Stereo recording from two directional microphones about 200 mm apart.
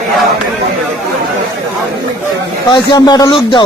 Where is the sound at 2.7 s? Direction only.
20° left (ahead or behind).